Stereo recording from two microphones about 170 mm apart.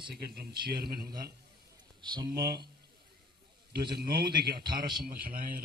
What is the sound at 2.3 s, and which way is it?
Speech, 70° right (ahead or behind).